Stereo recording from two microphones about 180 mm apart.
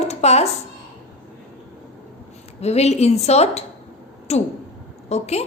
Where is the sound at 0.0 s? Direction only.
35° left (ahead or behind).